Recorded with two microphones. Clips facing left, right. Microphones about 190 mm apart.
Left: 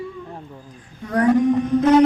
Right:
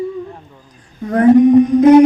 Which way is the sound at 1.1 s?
25° right (ahead or behind).